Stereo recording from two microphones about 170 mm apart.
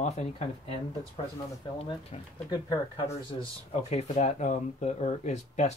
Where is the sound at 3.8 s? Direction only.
40° left (ahead or behind).